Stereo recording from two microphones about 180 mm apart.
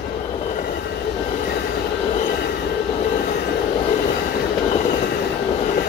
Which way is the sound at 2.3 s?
60° left (ahead or behind).